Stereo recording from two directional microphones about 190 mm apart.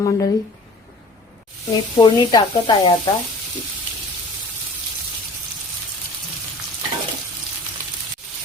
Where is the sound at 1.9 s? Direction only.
20° left (ahead or behind).